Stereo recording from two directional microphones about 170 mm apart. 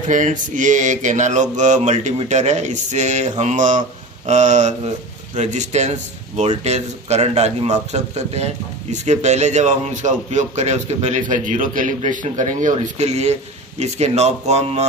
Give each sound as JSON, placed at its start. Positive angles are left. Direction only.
{"t": 0.1, "sound": "a man's voice", "side_deg": -45}